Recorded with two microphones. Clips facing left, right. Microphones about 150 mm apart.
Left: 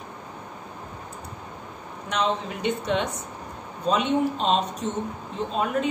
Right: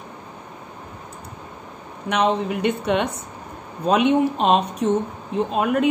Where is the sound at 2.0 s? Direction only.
60° right (ahead or behind).